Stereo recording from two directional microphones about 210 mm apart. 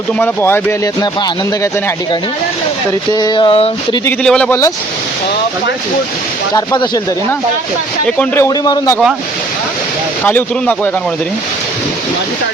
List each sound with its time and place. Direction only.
0.2 s speech: 10° left (ahead or behind)
3.1 s a sound: 20° left (ahead or behind)
4.0 s speech: 5° left (ahead or behind)
6.5 s speech: 15° left (ahead or behind)
8.0 s speech: 5° left (ahead or behind)
8.4 s speech: 15° left (ahead or behind)
10.2 s speech: 10° left (ahead or behind)